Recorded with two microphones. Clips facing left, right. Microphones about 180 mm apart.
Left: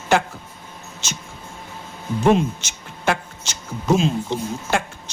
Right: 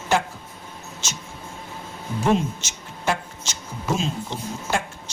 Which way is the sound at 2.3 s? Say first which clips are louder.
Left 3 dB; 65° left (ahead or behind).